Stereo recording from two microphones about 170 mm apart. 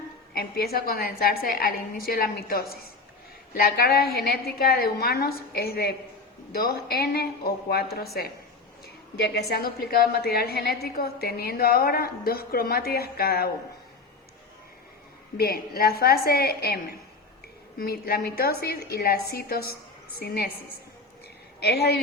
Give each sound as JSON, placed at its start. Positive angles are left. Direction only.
{"t": 0.3, "sound": "a woman's voice", "side_deg": 65}
{"t": 15.4, "sound": "a woman's voice", "side_deg": 65}
{"t": 21.6, "sound": "a woman's voice", "side_deg": 70}